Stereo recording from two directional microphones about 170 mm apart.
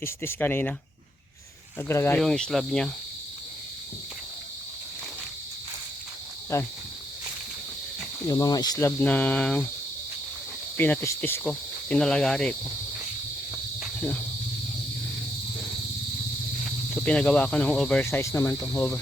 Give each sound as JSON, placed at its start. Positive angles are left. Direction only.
{"t": 0.0, "sound": "speech", "side_deg": 10}
{"t": 1.9, "sound": "speech", "side_deg": 15}
{"t": 2.2, "sound": "speech", "side_deg": 0}
{"t": 6.5, "sound": "speech", "side_deg": 20}
{"t": 8.3, "sound": "cricket", "side_deg": 20}
{"t": 9.0, "sound": "speech", "side_deg": 10}
{"t": 10.8, "sound": "speech", "side_deg": 10}
{"t": 11.4, "sound": "cricket", "side_deg": 5}
{"t": 13.7, "sound": "cricket", "side_deg": 0}
{"t": 16.9, "sound": "speech", "side_deg": 5}